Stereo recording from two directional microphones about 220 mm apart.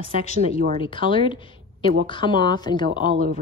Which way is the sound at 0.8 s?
20° left (ahead or behind).